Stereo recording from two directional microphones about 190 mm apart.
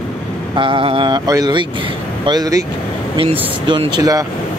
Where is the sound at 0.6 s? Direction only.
25° right (ahead or behind).